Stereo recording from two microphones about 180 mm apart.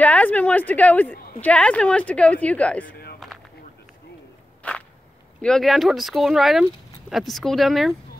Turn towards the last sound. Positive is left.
turn(degrees=0)  # may be behind; listen again after turning